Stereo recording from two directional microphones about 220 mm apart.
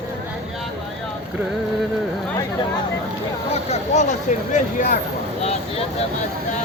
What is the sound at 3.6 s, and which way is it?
Speech, 30° left (ahead or behind).